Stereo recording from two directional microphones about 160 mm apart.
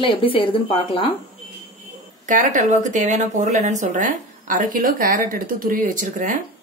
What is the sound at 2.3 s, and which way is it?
Speech, 50° right (ahead or behind).